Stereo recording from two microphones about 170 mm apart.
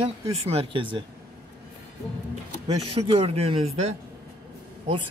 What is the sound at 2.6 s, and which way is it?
Speech, 35° right (ahead or behind).